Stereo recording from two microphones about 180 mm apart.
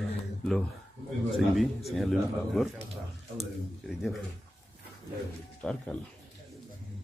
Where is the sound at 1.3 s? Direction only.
Centre (ahead or behind).